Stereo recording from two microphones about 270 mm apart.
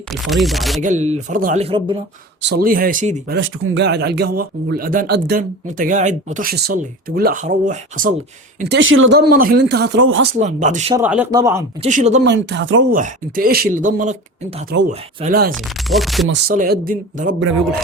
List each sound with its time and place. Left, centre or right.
0.1 s speech: centre
0.8 s a man's voice: right
2.4 s speech: right
3.3 s a man's voice: right
8.5 s speech: right
10.3 s a man's voice: right
10.9 s speech: centre
11.8 s a man's voice: right
12.2 s speech: right
12.9 s speech: right
15.5 s speech: centre
16.3 s speech: right